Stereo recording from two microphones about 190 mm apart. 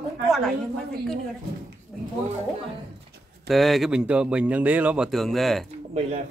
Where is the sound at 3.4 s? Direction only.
Centre (ahead or behind).